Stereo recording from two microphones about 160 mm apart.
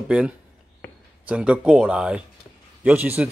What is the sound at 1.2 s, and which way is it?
Speech, 5° right (ahead or behind).